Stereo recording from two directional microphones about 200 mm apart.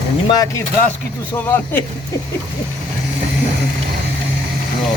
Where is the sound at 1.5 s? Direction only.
10° left (ahead or behind).